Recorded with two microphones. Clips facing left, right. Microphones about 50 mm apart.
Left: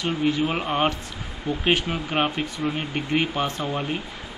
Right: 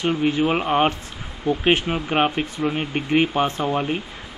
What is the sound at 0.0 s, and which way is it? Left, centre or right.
Speech, right.